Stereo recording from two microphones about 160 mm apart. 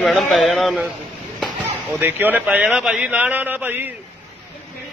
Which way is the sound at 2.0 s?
10° right (ahead or behind).